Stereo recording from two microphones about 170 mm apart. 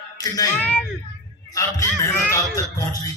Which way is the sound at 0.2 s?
20° left (ahead or behind).